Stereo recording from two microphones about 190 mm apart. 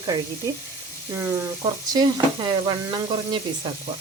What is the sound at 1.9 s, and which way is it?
Speech, 20° right (ahead or behind).